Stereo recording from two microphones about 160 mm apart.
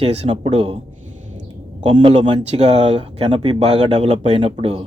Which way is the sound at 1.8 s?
35° right (ahead or behind).